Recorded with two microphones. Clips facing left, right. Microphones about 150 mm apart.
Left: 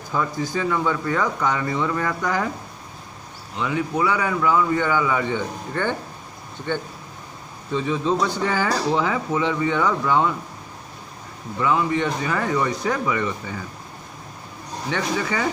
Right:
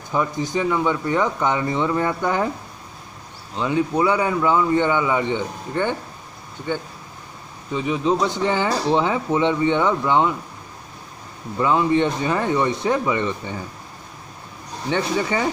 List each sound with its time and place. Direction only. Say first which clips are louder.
0.1 s speech: right 2 dB; 20° right (ahead or behind)
3.5 s speech: right 3 dB; 30° right (ahead or behind)
11.6 s speech: right 3 dB; 30° right (ahead or behind)
14.9 s speech: right 3 dB; 30° right (ahead or behind)